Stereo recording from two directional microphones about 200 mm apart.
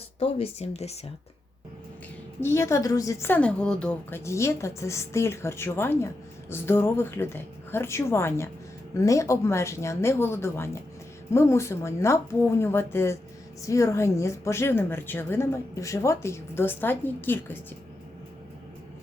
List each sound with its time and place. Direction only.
0.2 s speech: 30° left (ahead or behind)
2.4 s a woman's voice: 15° left (ahead or behind)